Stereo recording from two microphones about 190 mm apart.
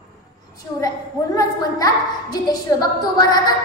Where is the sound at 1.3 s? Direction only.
20° left (ahead or behind).